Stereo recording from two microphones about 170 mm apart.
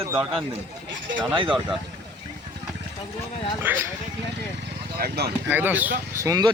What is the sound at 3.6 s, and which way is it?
Speech, 10° right (ahead or behind).